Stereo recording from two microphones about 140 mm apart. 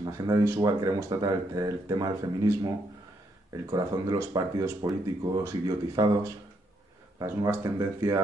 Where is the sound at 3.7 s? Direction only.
30° right (ahead or behind).